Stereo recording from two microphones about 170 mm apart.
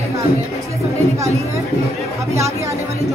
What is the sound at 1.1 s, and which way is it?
Speech, 15° right (ahead or behind).